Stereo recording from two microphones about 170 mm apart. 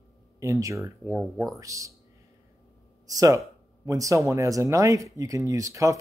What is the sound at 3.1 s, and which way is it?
Speech, 20° right (ahead or behind).